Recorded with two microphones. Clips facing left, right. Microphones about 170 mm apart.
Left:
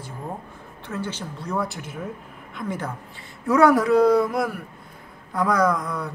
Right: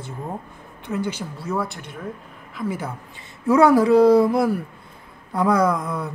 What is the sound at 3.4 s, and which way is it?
Speech, 30° right (ahead or behind).